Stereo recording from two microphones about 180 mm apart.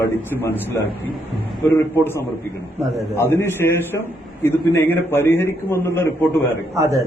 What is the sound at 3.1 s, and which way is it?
A man's voice, 15° left (ahead or behind).